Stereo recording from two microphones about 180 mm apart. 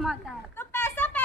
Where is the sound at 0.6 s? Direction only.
10° left (ahead or behind).